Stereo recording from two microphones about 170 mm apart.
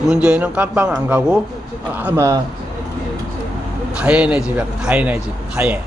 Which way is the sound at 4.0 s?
5° right (ahead or behind).